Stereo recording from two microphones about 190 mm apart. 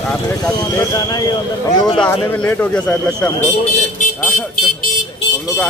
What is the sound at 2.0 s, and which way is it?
Speech, 10° left (ahead or behind).